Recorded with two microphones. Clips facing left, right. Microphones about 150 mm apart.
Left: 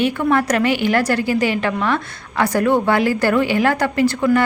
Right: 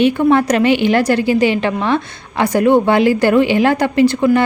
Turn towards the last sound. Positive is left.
turn(degrees=-20)  # may be behind; listen again after turning